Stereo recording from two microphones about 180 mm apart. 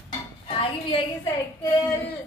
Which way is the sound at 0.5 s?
30° left (ahead or behind).